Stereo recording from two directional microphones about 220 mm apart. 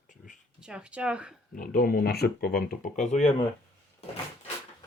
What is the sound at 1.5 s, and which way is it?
Speech, 40° left (ahead or behind).